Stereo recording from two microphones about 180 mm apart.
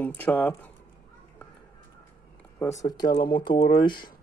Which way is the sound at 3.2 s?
55° left (ahead or behind).